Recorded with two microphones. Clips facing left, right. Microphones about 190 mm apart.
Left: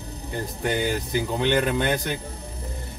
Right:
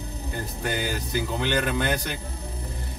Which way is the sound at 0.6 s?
20° left (ahead or behind).